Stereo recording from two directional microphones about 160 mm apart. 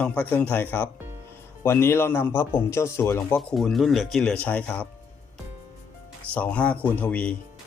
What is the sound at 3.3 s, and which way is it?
Speech, centre (ahead or behind).